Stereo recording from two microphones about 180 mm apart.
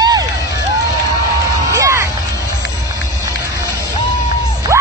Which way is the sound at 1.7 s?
15° right (ahead or behind).